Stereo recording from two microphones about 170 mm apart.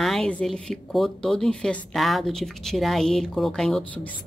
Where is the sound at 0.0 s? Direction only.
Centre (ahead or behind).